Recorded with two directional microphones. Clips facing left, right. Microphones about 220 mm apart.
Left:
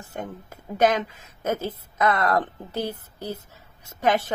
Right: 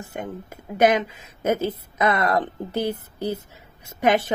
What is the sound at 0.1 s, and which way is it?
A woman's voice, 10° right (ahead or behind).